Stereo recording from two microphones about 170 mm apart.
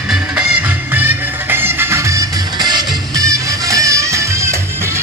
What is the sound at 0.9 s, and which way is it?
Music, 10° right (ahead or behind).